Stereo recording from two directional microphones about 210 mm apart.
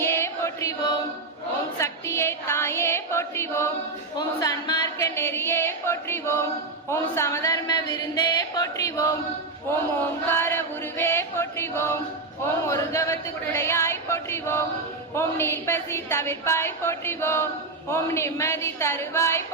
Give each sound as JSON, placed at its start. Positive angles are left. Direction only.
{"t": 0.0, "sound": "chant", "side_deg": 10}
{"t": 1.8, "sound": "music", "side_deg": 15}
{"t": 4.2, "sound": "a woman's voice", "side_deg": 20}
{"t": 10.2, "sound": "a woman's voice", "side_deg": 10}